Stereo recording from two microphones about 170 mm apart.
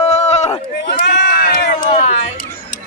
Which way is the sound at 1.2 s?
70° left (ahead or behind).